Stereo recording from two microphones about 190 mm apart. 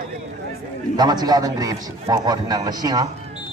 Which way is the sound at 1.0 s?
20° right (ahead or behind).